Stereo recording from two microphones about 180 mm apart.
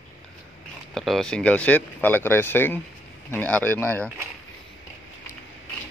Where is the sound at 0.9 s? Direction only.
Centre (ahead or behind).